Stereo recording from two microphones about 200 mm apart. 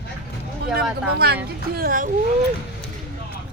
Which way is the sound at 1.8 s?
45° right (ahead or behind).